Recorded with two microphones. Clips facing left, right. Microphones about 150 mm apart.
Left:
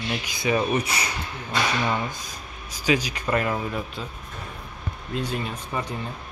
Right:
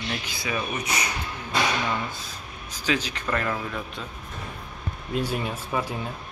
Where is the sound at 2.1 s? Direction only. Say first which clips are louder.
Left 1 dB; 15° left (ahead or behind).